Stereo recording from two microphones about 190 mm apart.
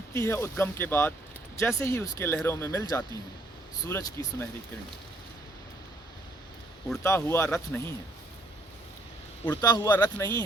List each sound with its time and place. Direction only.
0.1 s speech: 15° left (ahead or behind)
7.0 s speech: 15° left (ahead or behind)
9.5 s speech: 20° left (ahead or behind)